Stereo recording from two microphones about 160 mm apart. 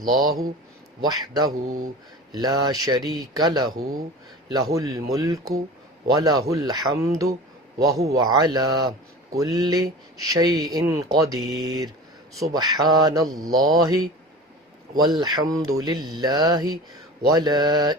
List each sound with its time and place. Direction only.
0.1 s speech: 25° right (ahead or behind)